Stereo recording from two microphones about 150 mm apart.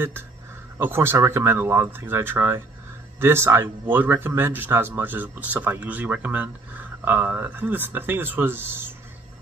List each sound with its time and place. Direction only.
0.7 s speech: 15° right (ahead or behind)